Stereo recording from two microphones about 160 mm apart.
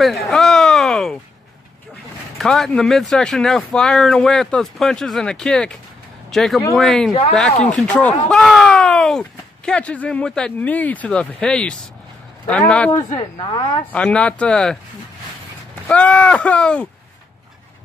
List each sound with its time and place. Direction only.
0.0 s a sound: centre (ahead or behind)
2.3 s speech: centre (ahead or behind)
13.4 s speech: 25° left (ahead or behind)
13.9 s speech: 5° left (ahead or behind)
15.9 s speech: 5° left (ahead or behind)